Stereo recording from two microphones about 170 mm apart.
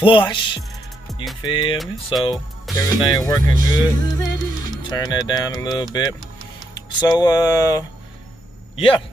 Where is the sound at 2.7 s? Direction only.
25° left (ahead or behind).